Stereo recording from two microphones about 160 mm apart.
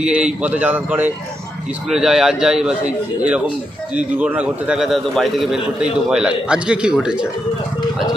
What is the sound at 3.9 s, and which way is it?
A man's voice, 10° right (ahead or behind).